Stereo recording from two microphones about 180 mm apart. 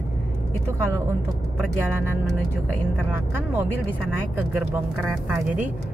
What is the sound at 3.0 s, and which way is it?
Speech, 10° right (ahead or behind).